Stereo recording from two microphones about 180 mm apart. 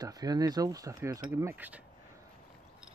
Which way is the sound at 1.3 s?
10° right (ahead or behind).